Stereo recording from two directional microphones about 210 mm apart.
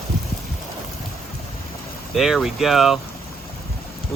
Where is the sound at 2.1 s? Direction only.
Centre (ahead or behind).